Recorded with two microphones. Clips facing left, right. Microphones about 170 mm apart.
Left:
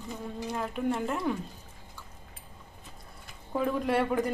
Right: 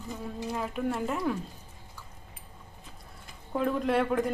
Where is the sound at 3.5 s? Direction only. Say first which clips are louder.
Right 1 dB; centre (ahead or behind).